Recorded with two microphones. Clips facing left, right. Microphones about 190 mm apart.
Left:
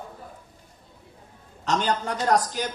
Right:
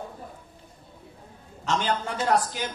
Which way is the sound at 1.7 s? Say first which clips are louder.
Left 2 dB; 40° left (ahead or behind).